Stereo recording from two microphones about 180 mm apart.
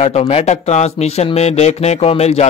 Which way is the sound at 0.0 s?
35° left (ahead or behind).